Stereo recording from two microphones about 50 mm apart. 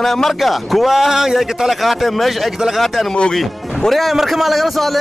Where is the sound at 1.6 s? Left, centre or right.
Centre.